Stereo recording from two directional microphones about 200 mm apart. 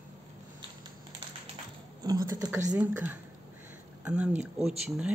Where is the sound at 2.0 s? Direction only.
20° right (ahead or behind).